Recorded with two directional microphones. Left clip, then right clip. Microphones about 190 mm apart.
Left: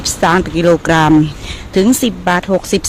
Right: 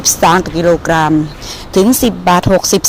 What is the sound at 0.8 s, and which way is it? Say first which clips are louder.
Speech: even; 20° left (ahead or behind).